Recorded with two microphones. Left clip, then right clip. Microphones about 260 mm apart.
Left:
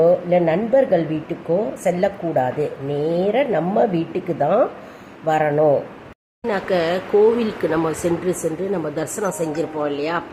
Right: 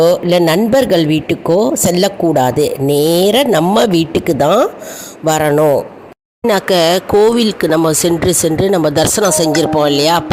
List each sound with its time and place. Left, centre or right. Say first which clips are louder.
0.0 s speech: right 5 dB; right